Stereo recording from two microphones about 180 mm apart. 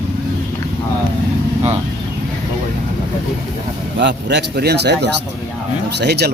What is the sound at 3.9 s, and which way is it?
Speech, 75° right (ahead or behind).